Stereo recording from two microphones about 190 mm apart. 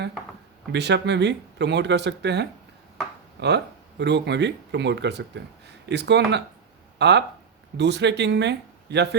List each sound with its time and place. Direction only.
0.7 s speech: 65° right (ahead or behind)